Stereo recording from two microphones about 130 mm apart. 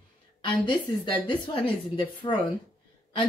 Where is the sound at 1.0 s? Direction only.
40° left (ahead or behind).